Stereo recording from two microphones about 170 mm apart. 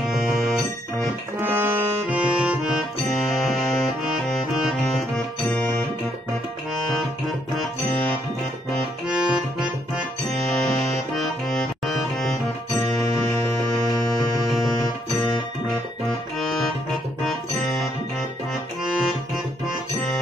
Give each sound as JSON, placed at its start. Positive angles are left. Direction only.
{"t": 1.4, "sound": "music", "side_deg": -10}
{"t": 9.1, "sound": "accordion", "side_deg": -5}
{"t": 11.1, "sound": "accordion", "side_deg": 0}
{"t": 13.8, "sound": "music", "side_deg": 20}
{"t": 16.3, "sound": "accordion", "side_deg": 0}
{"t": 17.2, "sound": "music", "side_deg": 0}
{"t": 18.9, "sound": "music", "side_deg": 0}